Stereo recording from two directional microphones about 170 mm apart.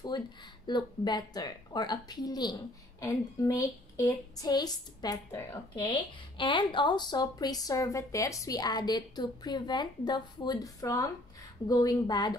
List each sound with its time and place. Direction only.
0.1 s a woman's voice: 25° left (ahead or behind)